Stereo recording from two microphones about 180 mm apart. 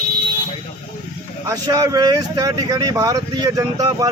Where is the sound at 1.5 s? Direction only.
20° right (ahead or behind).